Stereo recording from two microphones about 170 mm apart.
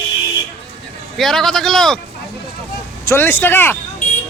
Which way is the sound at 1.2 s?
Centre (ahead or behind).